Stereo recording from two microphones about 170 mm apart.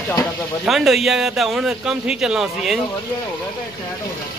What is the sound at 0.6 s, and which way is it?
Speech, centre (ahead or behind).